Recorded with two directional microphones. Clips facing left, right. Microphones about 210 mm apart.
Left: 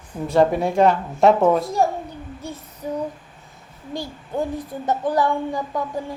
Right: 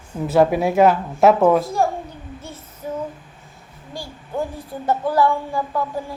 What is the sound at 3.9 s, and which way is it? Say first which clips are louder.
A child's voice: left 1 dB; 20° left (ahead or behind).